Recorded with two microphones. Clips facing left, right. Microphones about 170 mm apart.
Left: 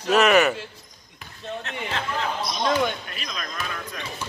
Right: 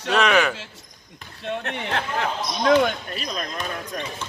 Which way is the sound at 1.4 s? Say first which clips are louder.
Right 4 dB; 65° right (ahead or behind).